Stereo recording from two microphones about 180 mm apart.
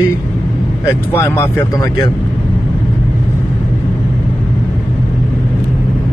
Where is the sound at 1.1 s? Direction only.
15° left (ahead or behind).